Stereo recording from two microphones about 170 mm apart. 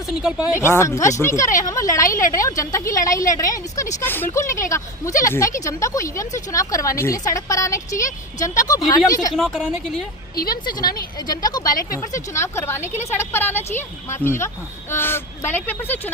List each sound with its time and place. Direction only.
0.0 s speech: 5° right (ahead or behind)
0.4 s a woman's voice: 15° left (ahead or behind)
9.3 s speech: 5° left (ahead or behind)
10.5 s a woman's voice: 25° left (ahead or behind)
12.8 s a woman's voice: 40° left (ahead or behind)
13.1 s speech: 15° left (ahead or behind)